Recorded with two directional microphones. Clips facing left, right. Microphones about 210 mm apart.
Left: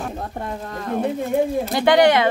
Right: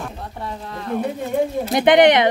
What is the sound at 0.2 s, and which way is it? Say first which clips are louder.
Speech: left 2 dB; 45° left (ahead or behind).